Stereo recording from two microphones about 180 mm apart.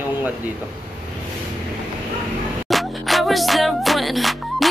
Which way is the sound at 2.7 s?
Centre (ahead or behind).